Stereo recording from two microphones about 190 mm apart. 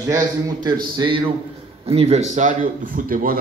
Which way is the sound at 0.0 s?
20° right (ahead or behind).